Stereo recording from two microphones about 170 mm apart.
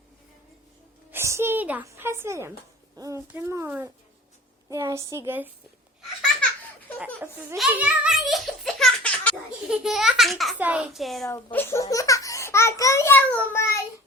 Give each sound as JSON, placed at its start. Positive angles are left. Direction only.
{"t": 1.1, "sound": "a sound", "side_deg": -15}
{"t": 3.0, "sound": "speech", "side_deg": -15}
{"t": 7.5, "sound": "giggle", "side_deg": -5}
{"t": 9.6, "sound": "a child's voice", "side_deg": 0}
{"t": 11.5, "sound": "a child's voice", "side_deg": 15}